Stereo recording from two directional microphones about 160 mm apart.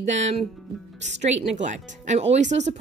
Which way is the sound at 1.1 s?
45° right (ahead or behind).